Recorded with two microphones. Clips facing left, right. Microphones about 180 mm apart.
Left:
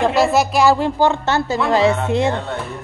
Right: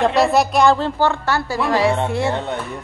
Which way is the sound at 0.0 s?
Centre (ahead or behind).